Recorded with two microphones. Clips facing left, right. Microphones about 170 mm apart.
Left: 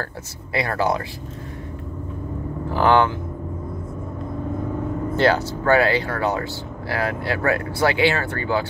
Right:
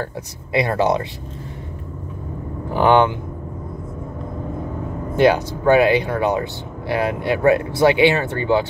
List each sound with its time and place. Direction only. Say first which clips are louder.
0.0 s speech: right 4 dB; 20° right (ahead or behind)
2.7 s speech: right 3 dB; 20° right (ahead or behind)
5.1 s speech: right 4 dB; 15° right (ahead or behind)